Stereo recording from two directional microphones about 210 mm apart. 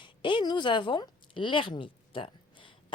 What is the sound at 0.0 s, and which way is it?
Speech, 25° left (ahead or behind).